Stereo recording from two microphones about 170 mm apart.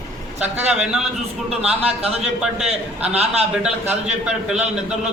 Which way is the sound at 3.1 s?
40° right (ahead or behind).